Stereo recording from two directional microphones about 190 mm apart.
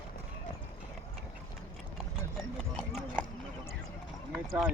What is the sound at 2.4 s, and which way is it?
Clip-clop, centre (ahead or behind).